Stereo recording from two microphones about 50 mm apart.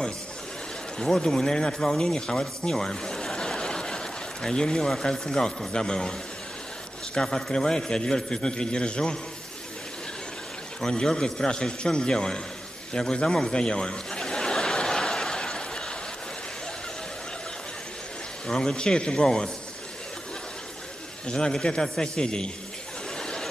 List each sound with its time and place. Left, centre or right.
0.9 s speech: centre
7.2 s a man's voice: centre
10.8 s a man's voice: centre
12.9 s a sound: centre
18.5 s a man's voice: centre
21.3 s a man's voice: centre
23.1 s a sound: centre